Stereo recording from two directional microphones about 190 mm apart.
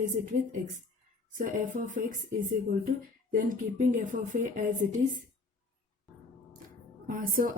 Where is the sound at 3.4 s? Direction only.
45° right (ahead or behind).